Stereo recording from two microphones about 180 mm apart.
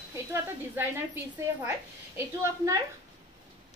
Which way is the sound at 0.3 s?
10° right (ahead or behind).